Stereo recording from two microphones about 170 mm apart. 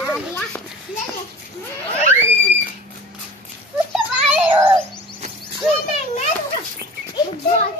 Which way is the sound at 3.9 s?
10° right (ahead or behind).